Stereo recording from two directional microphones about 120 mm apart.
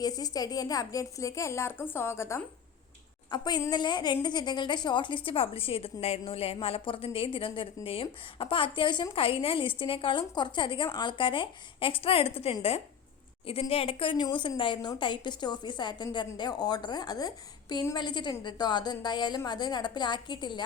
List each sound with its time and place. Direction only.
0.0 s a woman's voice: 30° left (ahead or behind)
3.2 s a woman's voice: 35° left (ahead or behind)